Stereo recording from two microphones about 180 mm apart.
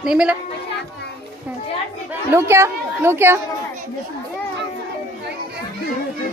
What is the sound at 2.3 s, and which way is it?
Speech, 15° right (ahead or behind).